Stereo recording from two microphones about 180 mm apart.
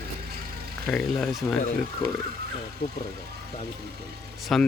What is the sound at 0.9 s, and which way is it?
Speech, centre (ahead or behind).